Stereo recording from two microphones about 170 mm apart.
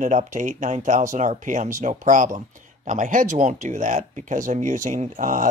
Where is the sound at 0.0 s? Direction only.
45° right (ahead or behind).